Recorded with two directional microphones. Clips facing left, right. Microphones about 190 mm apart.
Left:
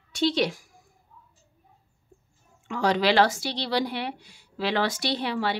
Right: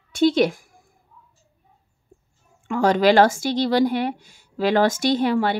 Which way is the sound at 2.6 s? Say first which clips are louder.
Right 6 dB; 50° right (ahead or behind).